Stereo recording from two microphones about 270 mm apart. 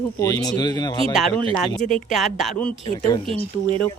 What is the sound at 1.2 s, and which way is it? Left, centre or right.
A woman's voice, centre.